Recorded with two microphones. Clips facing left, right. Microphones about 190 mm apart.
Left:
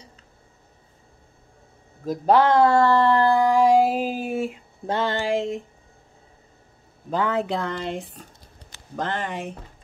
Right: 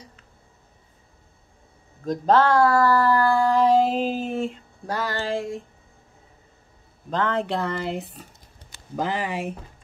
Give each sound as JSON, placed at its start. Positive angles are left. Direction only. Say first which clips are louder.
{"t": 2.0, "sound": "speech", "louder": "left 1 dB", "side_deg": 10}
{"t": 4.8, "sound": "speech", "louder": "left 3 dB", "side_deg": 25}
{"t": 7.1, "sound": "speech", "louder": "left 1 dB", "side_deg": 5}